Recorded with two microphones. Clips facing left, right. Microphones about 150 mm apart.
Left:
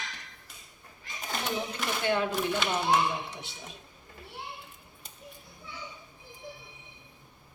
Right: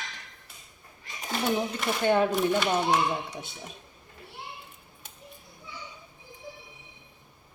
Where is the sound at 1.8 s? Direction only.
Centre (ahead or behind).